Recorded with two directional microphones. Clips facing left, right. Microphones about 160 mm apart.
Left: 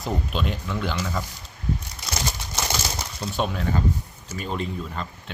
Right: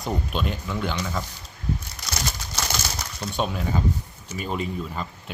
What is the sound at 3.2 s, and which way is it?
Speech, centre (ahead or behind).